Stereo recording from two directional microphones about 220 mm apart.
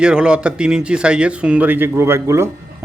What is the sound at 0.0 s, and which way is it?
Speech, 5° right (ahead or behind).